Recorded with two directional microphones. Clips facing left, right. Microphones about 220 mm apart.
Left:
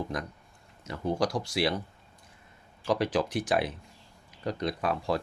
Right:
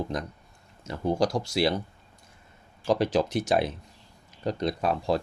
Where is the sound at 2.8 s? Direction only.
25° right (ahead or behind).